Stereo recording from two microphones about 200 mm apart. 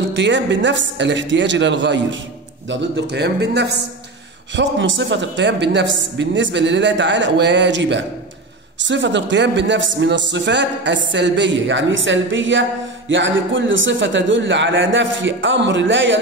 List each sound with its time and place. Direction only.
0.1 s a man's voice: 65° right (ahead or behind)
4.6 s a man's voice: 65° right (ahead or behind)